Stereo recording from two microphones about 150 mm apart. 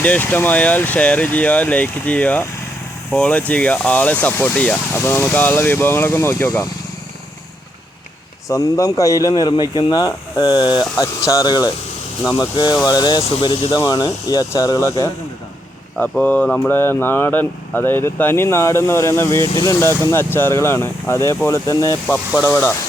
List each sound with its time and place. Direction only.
0.0 s speech: 10° left (ahead or behind)
8.4 s speech: 20° left (ahead or behind)
22.0 s speech: 5° left (ahead or behind)